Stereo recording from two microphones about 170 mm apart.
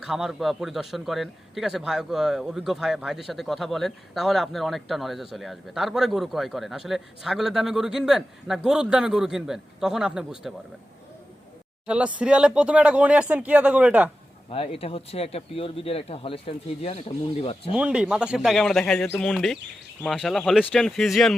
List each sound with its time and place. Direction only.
0.0 s a man's voice: centre (ahead or behind)
11.9 s speech: 5° right (ahead or behind)
14.5 s speech: 35° left (ahead or behind)
17.7 s a man's voice: 5° right (ahead or behind)